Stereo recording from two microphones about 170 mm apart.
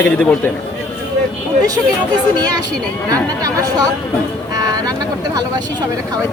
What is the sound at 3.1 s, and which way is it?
Speech, 20° right (ahead or behind).